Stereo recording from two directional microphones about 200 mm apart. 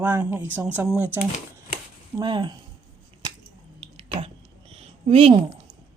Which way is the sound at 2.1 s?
20° right (ahead or behind).